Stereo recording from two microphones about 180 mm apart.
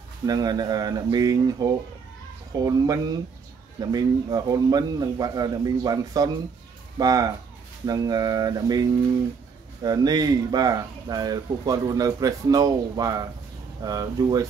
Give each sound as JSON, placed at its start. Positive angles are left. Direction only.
{"t": 0.3, "sound": "speech", "side_deg": -20}
{"t": 9.8, "sound": "speech", "side_deg": -20}